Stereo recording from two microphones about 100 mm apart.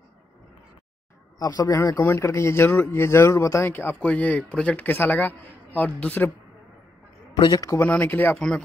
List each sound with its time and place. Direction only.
1.4 s speech: 40° left (ahead or behind); by 6.3 s 15° left (ahead or behind)
7.3 s a man's voice: 45° left (ahead or behind)
7.6 s speech: 25° left (ahead or behind)